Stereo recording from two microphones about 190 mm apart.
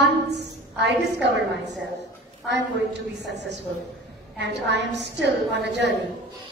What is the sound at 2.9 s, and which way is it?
A woman's voice, 65° right (ahead or behind).